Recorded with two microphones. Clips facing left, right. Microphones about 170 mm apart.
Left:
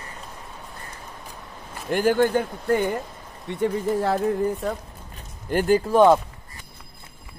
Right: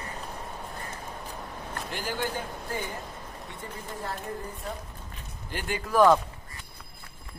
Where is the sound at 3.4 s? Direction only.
75° left (ahead or behind); by 4.7 s 90° left.